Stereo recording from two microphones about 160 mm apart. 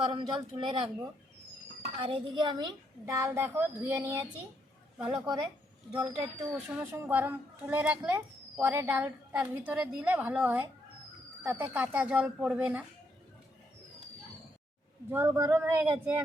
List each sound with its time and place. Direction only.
0.1 s a woman's voice: 30° right (ahead or behind); by 4.1 s 15° right (ahead or behind)
5.0 s a woman's voice: 25° right (ahead or behind)
6.5 s a child's voice: 10° right (ahead or behind)
15.1 s a child's voice: 15° right (ahead or behind)